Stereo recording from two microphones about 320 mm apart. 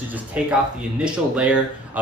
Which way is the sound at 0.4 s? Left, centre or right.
Centre.